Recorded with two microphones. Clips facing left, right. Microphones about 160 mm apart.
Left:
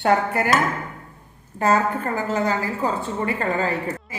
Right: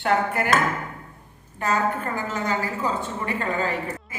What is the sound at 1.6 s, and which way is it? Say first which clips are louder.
A woman's voice: left 4 dB; 35° left (ahead or behind).